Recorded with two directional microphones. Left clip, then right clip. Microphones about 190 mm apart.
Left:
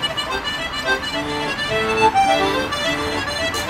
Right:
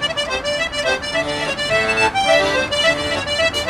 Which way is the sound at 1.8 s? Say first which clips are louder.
Left 3 dB; 10° right (ahead or behind).